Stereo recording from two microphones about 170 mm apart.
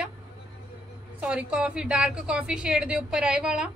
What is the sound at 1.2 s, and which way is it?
A woman's voice, 5° right (ahead or behind).